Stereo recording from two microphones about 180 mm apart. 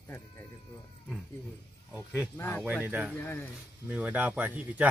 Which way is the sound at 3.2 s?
10° left (ahead or behind).